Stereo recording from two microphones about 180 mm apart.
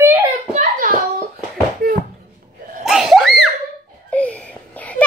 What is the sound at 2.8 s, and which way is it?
Screaming, centre (ahead or behind).